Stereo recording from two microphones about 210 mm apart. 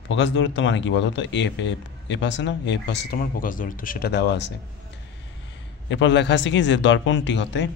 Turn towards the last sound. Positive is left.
turn(degrees=60)  # may be behind; listen again after turning